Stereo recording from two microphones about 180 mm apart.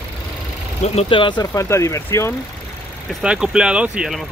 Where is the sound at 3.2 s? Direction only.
5° right (ahead or behind).